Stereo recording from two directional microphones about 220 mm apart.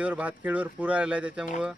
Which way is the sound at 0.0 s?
5° right (ahead or behind).